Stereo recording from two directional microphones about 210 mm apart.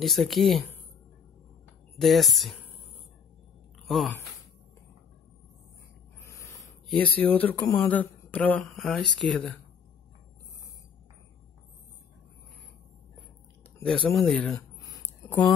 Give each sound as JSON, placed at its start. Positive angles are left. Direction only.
{"t": 0.0, "sound": "speech", "side_deg": 0}
{"t": 2.0, "sound": "speech", "side_deg": 0}
{"t": 3.8, "sound": "speech", "side_deg": 0}
{"t": 6.2, "sound": "a sound", "side_deg": 15}
{"t": 6.9, "sound": "speech", "side_deg": 5}
{"t": 14.1, "sound": "speech", "side_deg": 5}
{"t": 14.8, "sound": "a sound", "side_deg": 15}